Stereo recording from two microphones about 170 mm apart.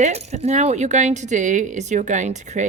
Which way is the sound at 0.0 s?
40° right (ahead or behind).